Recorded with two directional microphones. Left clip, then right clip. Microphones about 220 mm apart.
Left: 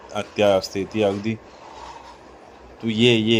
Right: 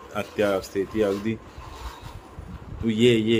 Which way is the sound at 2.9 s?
20° left (ahead or behind).